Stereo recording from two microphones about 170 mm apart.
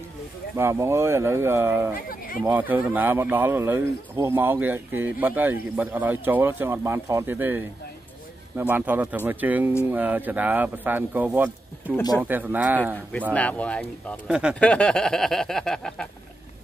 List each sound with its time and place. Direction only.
0.6 s speech: 15° right (ahead or behind)
2.0 s speech: 55° left (ahead or behind)
2.4 s speech: 10° right (ahead or behind)
13.3 s speech: 5° left (ahead or behind)
14.2 s speech: 5° right (ahead or behind)
14.6 s speech: 5° left (ahead or behind)